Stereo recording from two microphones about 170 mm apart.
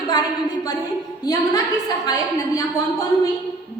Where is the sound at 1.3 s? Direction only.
20° left (ahead or behind).